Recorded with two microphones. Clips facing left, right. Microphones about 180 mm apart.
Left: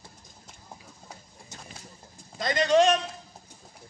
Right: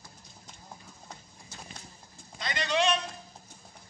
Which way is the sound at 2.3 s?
45° left (ahead or behind).